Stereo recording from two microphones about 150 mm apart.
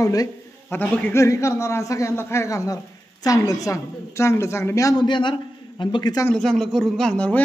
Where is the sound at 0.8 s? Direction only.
10° left (ahead or behind); by 6.2 s 30° left (ahead or behind).